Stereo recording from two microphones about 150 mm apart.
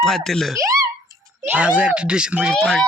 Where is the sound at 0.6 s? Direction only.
20° right (ahead or behind).